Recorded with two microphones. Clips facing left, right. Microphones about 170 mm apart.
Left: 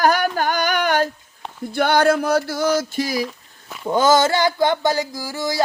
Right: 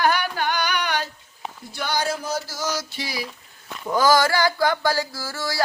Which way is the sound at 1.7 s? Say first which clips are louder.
Left 10 dB; 55° left (ahead or behind).